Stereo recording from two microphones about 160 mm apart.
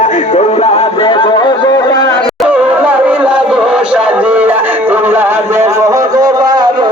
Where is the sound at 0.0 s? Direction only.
50° left (ahead or behind); by 2.2 s 20° left (ahead or behind).